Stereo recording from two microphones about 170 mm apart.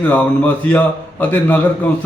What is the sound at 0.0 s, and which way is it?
Speech, 10° left (ahead or behind).